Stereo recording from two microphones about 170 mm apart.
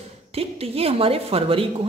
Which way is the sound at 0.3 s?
35° right (ahead or behind).